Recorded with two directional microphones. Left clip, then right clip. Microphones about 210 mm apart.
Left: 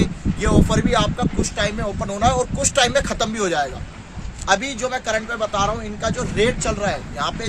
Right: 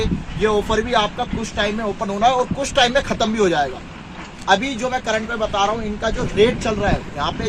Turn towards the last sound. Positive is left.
turn(degrees=15)  # may be behind; listen again after turning